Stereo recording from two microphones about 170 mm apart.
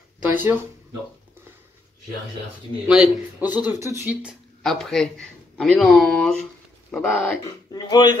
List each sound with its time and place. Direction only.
0.3 s speech: 10° right (ahead or behind)
2.9 s speech: 10° right (ahead or behind)
7.7 s speech: 25° left (ahead or behind)